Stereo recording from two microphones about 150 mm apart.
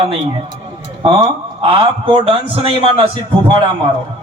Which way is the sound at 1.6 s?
40° right (ahead or behind).